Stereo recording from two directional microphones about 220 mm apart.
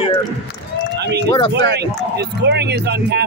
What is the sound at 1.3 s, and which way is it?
Speech, 20° left (ahead or behind).